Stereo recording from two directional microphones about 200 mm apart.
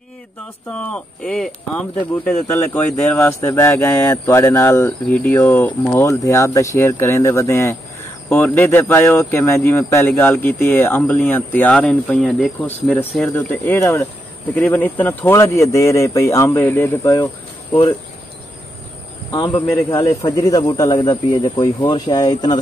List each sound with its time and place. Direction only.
0.7 s speech: 5° left (ahead or behind)
19.3 s speech: 20° left (ahead or behind)